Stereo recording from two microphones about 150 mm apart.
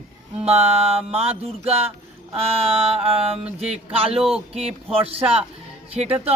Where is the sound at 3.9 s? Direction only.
40° right (ahead or behind).